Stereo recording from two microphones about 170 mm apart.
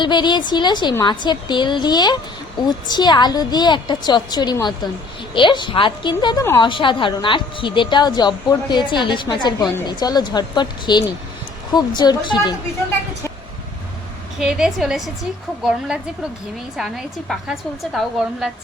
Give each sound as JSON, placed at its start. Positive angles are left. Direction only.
{"t": 0.0, "sound": "a woman's voice", "side_deg": 25}
{"t": 14.3, "sound": "a woman's voice", "side_deg": -5}
{"t": 16.7, "sound": "a woman's voice", "side_deg": 0}